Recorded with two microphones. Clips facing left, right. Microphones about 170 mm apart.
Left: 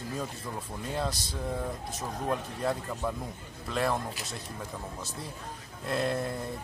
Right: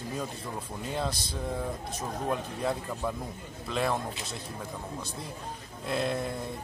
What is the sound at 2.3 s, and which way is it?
Speech, centre (ahead or behind).